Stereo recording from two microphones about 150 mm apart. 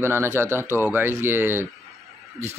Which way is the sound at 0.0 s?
15° right (ahead or behind).